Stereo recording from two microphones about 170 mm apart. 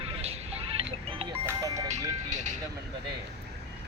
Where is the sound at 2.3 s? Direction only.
45° right (ahead or behind).